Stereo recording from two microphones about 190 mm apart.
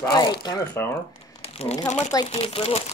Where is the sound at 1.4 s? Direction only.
30° left (ahead or behind).